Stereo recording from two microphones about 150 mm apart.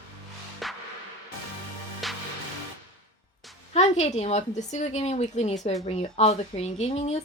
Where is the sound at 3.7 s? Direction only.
50° left (ahead or behind).